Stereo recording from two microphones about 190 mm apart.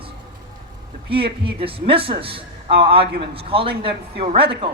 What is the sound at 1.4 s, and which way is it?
A man's voice, 30° right (ahead or behind).